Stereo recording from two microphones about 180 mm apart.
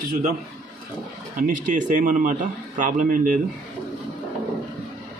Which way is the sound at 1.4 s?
45° right (ahead or behind).